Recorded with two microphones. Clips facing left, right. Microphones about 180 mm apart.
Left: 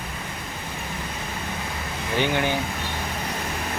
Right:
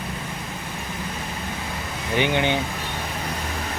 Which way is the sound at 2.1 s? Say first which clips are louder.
Right 2 dB; 20° right (ahead or behind).